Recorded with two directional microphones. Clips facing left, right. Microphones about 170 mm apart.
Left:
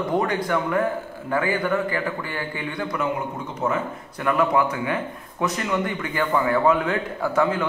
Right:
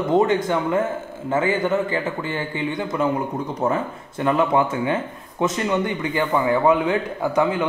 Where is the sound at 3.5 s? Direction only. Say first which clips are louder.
Right 1 dB; 35° right (ahead or behind).